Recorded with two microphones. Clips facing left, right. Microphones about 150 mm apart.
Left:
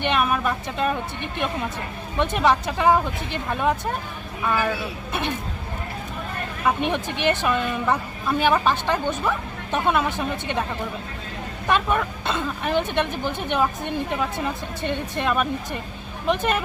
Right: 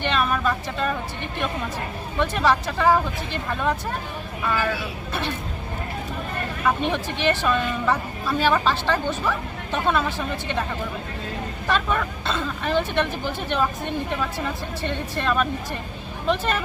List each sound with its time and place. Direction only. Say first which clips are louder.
0.0 s speech: left 1 dB; 15° left (ahead or behind)
2.1 s a woman's voice: left 1 dB; 20° left (ahead or behind)
6.9 s a woman's voice: even; 15° left (ahead or behind)
11.7 s a woman's voice: left 2 dB; 15° left (ahead or behind)